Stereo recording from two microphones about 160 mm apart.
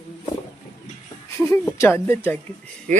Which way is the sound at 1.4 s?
15° left (ahead or behind).